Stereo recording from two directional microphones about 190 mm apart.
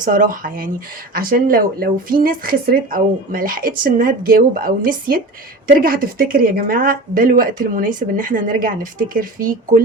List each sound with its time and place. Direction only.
0.0 s speech: 45° right (ahead or behind)